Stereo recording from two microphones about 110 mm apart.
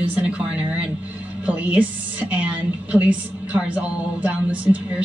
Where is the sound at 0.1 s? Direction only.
15° right (ahead or behind).